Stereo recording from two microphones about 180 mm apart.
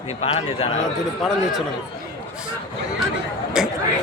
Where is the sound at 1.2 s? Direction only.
Centre (ahead or behind).